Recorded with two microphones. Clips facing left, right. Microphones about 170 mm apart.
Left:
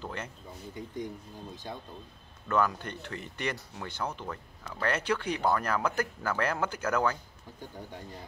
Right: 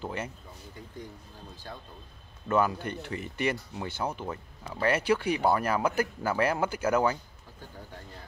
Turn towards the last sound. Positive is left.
turn(degrees=-10)  # may be behind; listen again after turning